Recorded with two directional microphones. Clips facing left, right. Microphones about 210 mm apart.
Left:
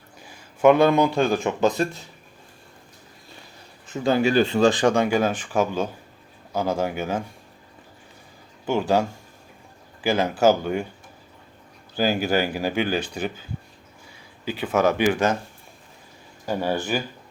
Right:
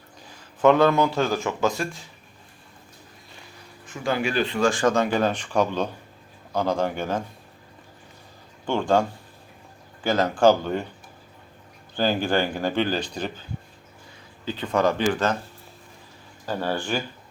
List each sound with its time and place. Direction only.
0.3 s a man's voice: 10° left (ahead or behind)
4.0 s speech: 25° left (ahead or behind); by 7.3 s 10° left (ahead or behind)
8.6 s speech: 5° left (ahead or behind)
11.9 s speech: 10° left (ahead or behind)
14.4 s speech: 10° left (ahead or behind)
16.5 s speech: 10° left (ahead or behind)